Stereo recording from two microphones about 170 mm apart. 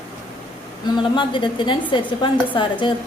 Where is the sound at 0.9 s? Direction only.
30° left (ahead or behind).